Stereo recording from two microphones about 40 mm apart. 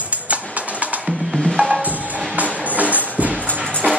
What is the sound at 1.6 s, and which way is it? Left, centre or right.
Music, right.